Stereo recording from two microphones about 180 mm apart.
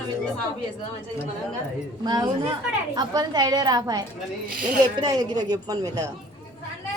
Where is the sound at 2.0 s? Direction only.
25° right (ahead or behind).